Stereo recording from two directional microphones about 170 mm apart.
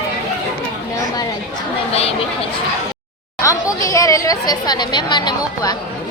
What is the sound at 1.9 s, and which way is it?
Speech, 35° left (ahead or behind).